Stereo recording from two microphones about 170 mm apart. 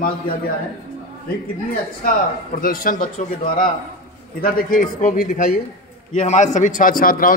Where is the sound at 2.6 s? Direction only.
55° left (ahead or behind).